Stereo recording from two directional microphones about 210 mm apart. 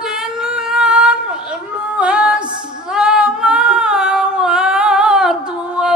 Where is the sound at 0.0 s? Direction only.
Centre (ahead or behind).